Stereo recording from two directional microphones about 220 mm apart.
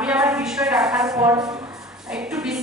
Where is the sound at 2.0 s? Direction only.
5° right (ahead or behind).